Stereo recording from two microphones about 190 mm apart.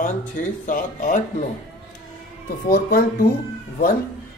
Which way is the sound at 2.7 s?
50° left (ahead or behind).